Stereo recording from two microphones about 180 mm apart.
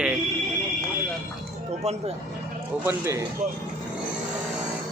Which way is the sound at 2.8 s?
15° right (ahead or behind).